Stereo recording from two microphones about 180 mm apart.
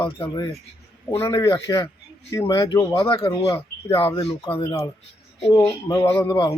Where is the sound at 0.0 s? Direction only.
30° left (ahead or behind).